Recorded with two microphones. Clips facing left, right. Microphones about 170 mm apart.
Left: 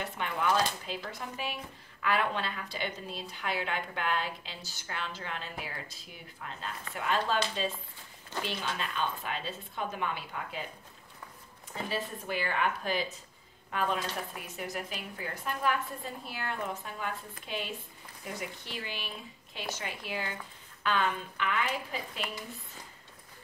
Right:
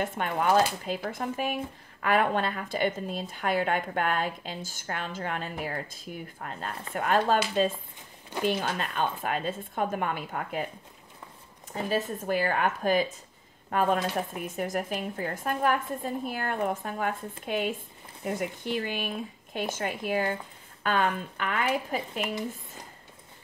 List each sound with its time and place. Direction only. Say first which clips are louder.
0.0 s a woman's voice: right 5 dB; 50° right (ahead or behind)
11.7 s a woman's voice: right 6 dB; 45° right (ahead or behind)